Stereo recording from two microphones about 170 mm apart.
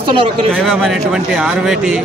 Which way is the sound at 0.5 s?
Centre (ahead or behind).